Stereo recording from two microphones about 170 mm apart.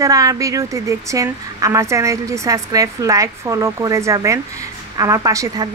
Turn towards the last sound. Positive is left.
turn(degrees=-20)  # may be behind; listen again after turning